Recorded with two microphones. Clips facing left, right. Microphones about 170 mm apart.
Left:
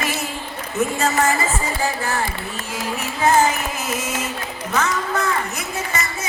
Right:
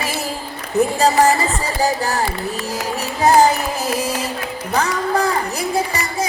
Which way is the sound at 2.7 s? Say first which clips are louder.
Right 3 dB; 40° right (ahead or behind).